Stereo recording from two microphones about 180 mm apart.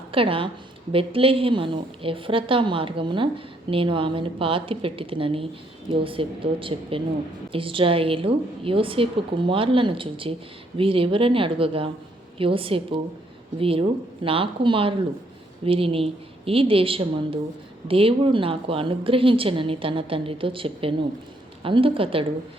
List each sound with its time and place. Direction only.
0.1 s a woman's voice: 30° right (ahead or behind)